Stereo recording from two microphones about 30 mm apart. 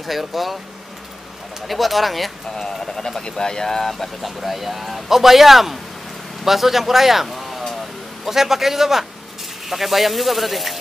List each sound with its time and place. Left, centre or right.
0.0 s speech: centre
1.7 s speech: centre
3.2 s speech: left
4.2 s speech: centre